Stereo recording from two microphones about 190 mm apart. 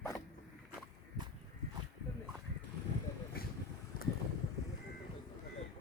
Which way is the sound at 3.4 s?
55° left (ahead or behind).